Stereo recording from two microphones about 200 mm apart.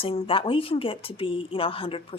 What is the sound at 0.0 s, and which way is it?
A woman's voice, 30° left (ahead or behind).